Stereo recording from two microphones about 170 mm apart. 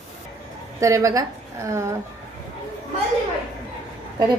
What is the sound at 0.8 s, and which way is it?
A woman's voice, 20° right (ahead or behind).